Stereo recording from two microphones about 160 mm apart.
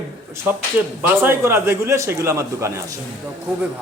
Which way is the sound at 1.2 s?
15° right (ahead or behind).